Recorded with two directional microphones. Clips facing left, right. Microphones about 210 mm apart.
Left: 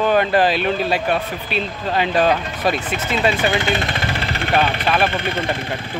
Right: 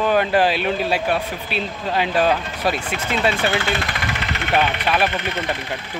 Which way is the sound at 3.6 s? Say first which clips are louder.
Left 3 dB; 20° left (ahead or behind).